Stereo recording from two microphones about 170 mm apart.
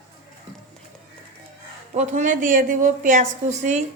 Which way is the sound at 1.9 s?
45° right (ahead or behind).